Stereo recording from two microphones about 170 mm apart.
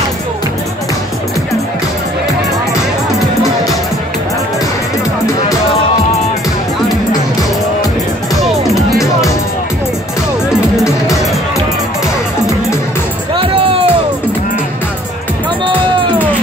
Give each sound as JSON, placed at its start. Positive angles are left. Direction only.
{"t": 8.4, "sound": "music", "side_deg": 0}
{"t": 13.3, "sound": "music", "side_deg": -30}